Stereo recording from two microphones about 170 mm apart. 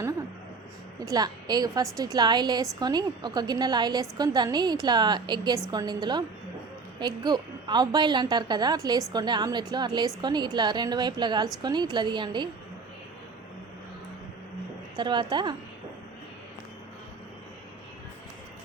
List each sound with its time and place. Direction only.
0.0 s a sound: 20° right (ahead or behind)
0.9 s a woman's voice: 20° right (ahead or behind)
14.9 s a woman's voice: 25° right (ahead or behind)